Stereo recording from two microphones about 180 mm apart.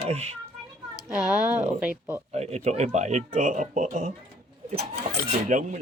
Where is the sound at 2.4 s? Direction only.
35° right (ahead or behind).